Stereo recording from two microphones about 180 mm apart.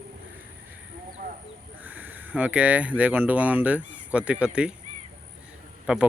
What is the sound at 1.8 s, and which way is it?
Speech, 10° right (ahead or behind).